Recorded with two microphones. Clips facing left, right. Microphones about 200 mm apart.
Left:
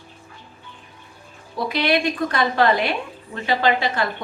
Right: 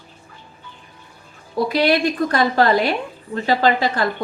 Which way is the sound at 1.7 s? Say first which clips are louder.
Right 3 dB; 40° right (ahead or behind).